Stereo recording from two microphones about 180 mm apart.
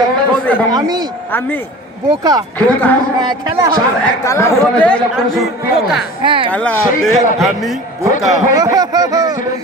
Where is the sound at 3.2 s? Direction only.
25° right (ahead or behind).